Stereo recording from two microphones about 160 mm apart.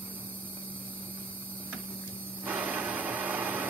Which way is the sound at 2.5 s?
10° right (ahead or behind).